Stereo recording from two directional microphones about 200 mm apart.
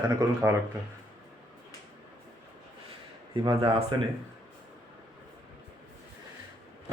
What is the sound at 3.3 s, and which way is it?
Speech, 20° right (ahead or behind).